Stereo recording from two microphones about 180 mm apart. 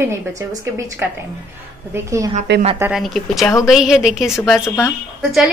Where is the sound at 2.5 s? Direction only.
75° right (ahead or behind).